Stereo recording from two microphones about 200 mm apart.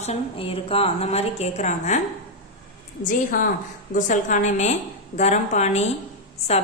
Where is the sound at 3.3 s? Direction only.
40° left (ahead or behind).